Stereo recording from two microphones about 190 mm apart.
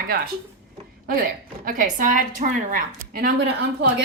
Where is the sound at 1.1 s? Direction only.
50° right (ahead or behind).